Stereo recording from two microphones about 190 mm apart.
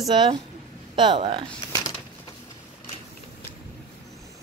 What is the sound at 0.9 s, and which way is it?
Speech, 25° right (ahead or behind).